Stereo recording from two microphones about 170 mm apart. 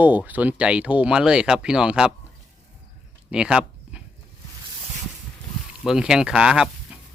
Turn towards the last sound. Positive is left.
turn(degrees=-5)  # may be behind; listen again after turning